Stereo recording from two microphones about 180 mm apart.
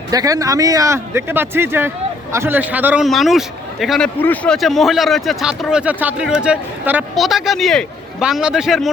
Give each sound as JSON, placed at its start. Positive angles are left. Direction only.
{"t": 0.1, "sound": "a man's voice", "side_deg": -20}